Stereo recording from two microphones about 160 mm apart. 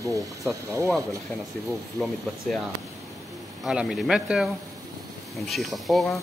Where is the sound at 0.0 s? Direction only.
20° right (ahead or behind).